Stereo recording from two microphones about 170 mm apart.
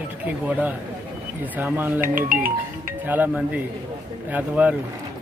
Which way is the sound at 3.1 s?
10° right (ahead or behind).